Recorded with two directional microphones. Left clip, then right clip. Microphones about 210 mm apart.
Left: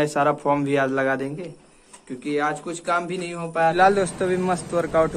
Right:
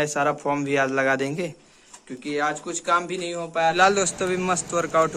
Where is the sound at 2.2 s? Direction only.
10° right (ahead or behind).